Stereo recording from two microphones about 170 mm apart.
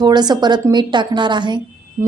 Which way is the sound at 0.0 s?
25° right (ahead or behind).